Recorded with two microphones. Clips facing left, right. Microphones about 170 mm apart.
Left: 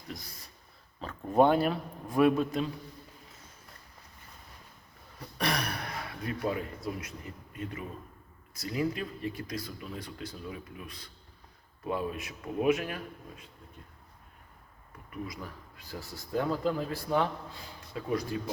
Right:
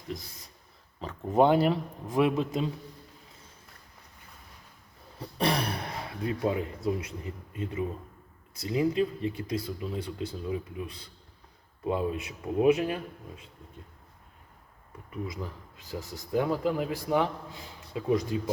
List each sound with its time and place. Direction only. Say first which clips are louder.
0.9 s speech: right 1 dB; 20° right (ahead or behind)
5.4 s speech: right 4 dB; 30° right (ahead or behind)
15.8 s a man's voice: right 4 dB; 20° right (ahead or behind)